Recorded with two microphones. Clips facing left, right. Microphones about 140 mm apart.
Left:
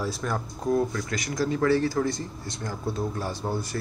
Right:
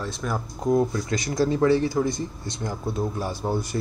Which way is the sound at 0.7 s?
25° right (ahead or behind).